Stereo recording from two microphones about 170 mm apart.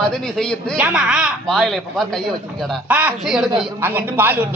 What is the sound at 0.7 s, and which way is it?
Speech, 5° right (ahead or behind).